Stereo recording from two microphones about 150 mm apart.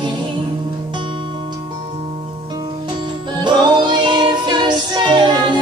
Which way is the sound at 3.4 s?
30° right (ahead or behind).